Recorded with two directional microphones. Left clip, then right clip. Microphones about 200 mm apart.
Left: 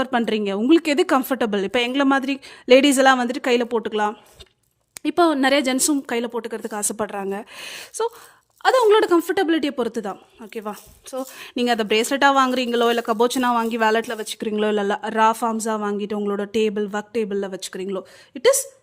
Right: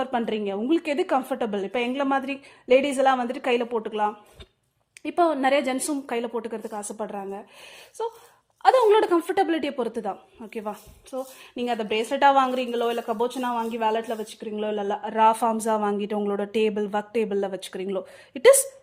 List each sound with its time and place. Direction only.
0.0 s a woman's voice: 45° left (ahead or behind)